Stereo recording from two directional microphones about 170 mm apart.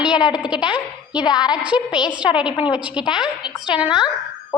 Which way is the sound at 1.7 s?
5° right (ahead or behind).